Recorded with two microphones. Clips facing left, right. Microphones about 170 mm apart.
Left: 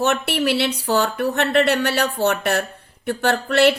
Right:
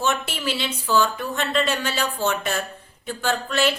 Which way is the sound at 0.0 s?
65° left (ahead or behind).